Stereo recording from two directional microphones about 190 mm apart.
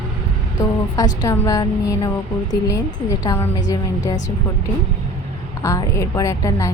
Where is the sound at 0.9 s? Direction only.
20° left (ahead or behind).